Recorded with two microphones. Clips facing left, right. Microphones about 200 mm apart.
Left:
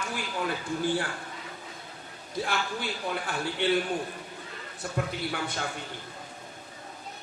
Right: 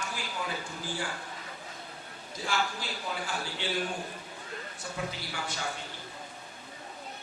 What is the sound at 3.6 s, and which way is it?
Speech, 60° left (ahead or behind).